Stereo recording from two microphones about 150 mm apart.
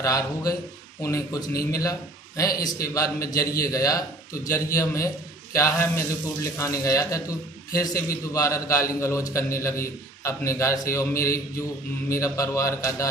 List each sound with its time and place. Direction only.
0.0 s a man's voice: 25° left (ahead or behind)